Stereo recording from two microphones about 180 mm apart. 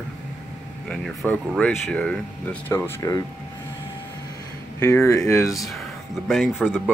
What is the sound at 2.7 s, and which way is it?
Speech, 15° left (ahead or behind).